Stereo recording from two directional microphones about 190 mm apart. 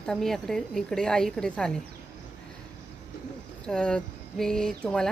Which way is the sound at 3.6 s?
5° left (ahead or behind).